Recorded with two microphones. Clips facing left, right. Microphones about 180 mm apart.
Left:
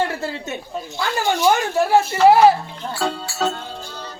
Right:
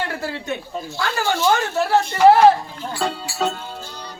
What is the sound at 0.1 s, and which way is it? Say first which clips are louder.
Speech: even; 25° left (ahead or behind).